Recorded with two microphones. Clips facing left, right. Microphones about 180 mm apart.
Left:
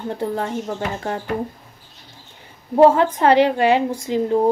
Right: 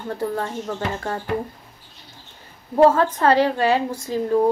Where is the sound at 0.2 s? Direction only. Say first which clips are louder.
Left 1 dB; 20° left (ahead or behind).